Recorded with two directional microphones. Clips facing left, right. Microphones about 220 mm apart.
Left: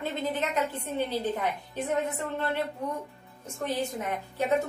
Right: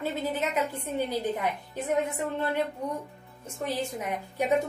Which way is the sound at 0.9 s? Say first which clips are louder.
Right 1 dB; 15° right (ahead or behind).